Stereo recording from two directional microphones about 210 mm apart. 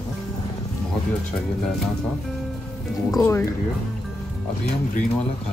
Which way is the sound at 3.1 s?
10° left (ahead or behind).